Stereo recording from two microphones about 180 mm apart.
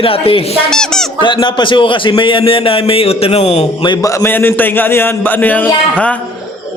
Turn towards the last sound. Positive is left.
turn(degrees=10)  # may be behind; listen again after turning